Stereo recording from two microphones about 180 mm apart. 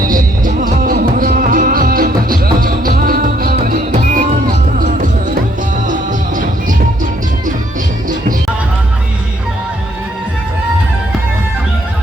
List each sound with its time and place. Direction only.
0.0 s music: 50° right (ahead or behind)